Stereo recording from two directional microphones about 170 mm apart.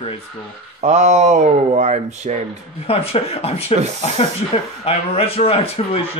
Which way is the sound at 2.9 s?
35° left (ahead or behind).